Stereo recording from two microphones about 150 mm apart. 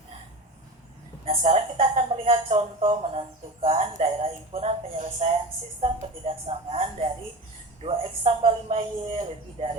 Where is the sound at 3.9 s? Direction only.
45° right (ahead or behind).